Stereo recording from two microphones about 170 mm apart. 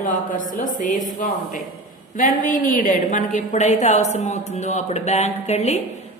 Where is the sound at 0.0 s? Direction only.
50° left (ahead or behind).